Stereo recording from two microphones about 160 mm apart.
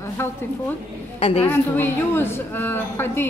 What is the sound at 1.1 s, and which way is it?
Speech, 40° left (ahead or behind).